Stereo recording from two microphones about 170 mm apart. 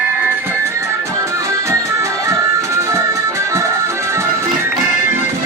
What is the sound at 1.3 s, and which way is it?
Music, 15° right (ahead or behind).